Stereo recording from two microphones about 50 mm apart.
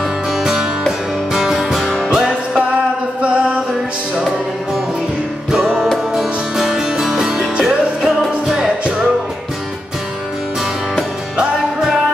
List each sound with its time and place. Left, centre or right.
0.4 s music: centre
2.1 s music: centre
6.1 s music: centre